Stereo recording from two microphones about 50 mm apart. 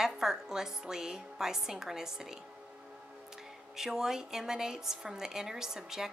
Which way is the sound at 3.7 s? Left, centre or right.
Centre.